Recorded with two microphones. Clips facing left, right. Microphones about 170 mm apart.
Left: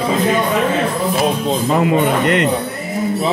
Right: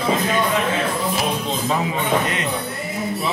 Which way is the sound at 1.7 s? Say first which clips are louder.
Left 7 dB; 60° left (ahead or behind).